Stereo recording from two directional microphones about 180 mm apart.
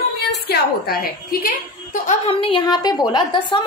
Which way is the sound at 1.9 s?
45° left (ahead or behind).